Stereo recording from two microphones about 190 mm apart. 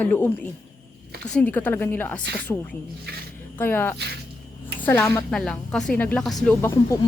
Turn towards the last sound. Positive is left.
turn(degrees=10)  # may be behind; listen again after turning